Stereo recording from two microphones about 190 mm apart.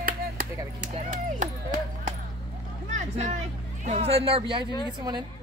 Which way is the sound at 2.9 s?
40° right (ahead or behind).